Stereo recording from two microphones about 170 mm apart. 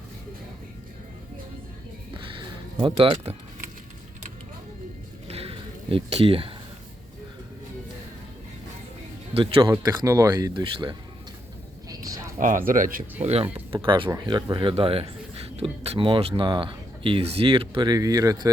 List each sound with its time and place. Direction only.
2.1 s music: 30° right (ahead or behind)
2.8 s speech: 30° right (ahead or behind)
5.3 s a sound: 35° right (ahead or behind)
9.3 s speech: 30° right (ahead or behind)
11.9 s a sound: 20° right (ahead or behind)
12.4 s speech: 50° right (ahead or behind); by 18.5 s 20° right (ahead or behind)